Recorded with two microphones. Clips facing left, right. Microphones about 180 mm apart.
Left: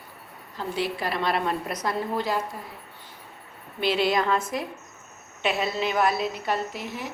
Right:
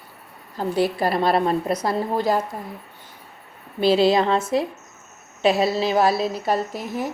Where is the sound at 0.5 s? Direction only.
40° right (ahead or behind).